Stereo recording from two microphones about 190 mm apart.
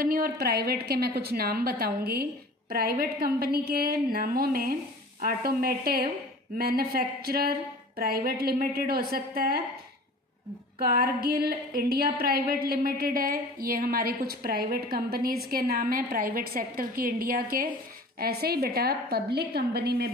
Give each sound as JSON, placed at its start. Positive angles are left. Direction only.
{"t": 0.0, "sound": "a woman's voice", "side_deg": -50}
{"t": 10.8, "sound": "a woman's voice", "side_deg": -55}